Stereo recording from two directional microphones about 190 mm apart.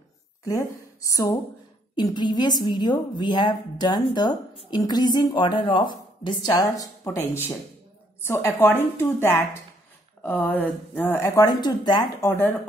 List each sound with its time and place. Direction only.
0.5 s a woman's voice: 15° left (ahead or behind)